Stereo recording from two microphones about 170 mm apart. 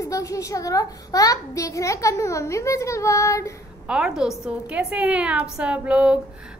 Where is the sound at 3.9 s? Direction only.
5° right (ahead or behind).